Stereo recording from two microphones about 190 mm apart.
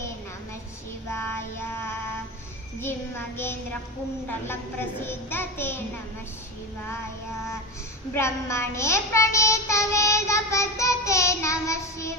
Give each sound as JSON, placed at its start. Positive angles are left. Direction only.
{"t": 1.1, "sound": "child singing", "side_deg": 10}
{"t": 2.8, "sound": "a child's voice", "side_deg": 10}
{"t": 8.1, "sound": "a child's voice", "side_deg": 15}